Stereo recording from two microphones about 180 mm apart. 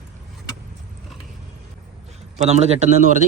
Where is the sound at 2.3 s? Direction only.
40° right (ahead or behind).